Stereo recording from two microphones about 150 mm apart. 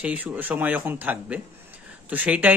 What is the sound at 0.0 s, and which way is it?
Speech, 10° right (ahead or behind).